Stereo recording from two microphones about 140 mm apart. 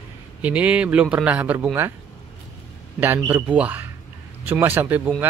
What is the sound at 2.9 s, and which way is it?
Speech, 15° right (ahead or behind).